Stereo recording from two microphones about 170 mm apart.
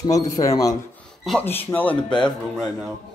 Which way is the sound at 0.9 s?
5° left (ahead or behind).